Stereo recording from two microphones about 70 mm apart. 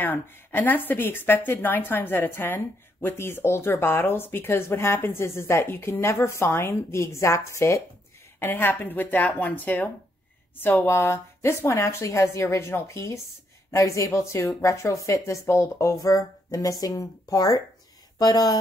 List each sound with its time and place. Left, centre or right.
0.0 s speech: left
8.4 s speech: left
16.0 s speech: left
18.2 s speech: left